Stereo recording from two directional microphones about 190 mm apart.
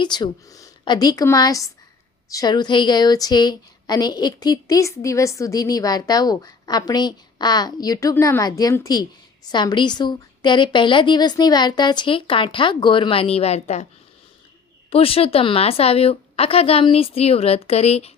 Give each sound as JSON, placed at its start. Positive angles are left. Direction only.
{"t": 0.0, "sound": "a woman's voice", "side_deg": 20}
{"t": 14.8, "sound": "a woman's voice", "side_deg": 30}